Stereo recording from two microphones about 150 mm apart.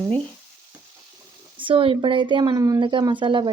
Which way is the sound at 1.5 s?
35° right (ahead or behind).